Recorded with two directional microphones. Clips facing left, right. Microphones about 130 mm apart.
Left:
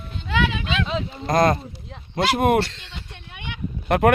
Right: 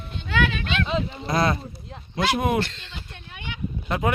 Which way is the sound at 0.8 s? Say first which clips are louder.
Right 1 dB; centre (ahead or behind).